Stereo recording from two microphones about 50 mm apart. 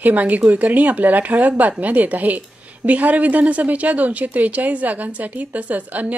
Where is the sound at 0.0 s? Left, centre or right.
Right.